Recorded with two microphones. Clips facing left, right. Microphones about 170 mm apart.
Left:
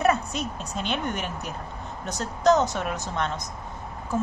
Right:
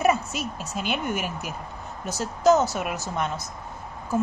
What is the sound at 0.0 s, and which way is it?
A woman's voice, 5° right (ahead or behind).